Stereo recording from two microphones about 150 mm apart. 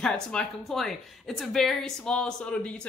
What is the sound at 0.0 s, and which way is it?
Speech, 5° left (ahead or behind).